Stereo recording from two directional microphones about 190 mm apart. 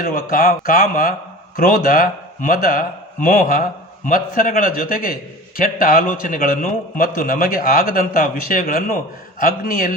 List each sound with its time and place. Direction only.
0.0 s a man's voice: 45° left (ahead or behind)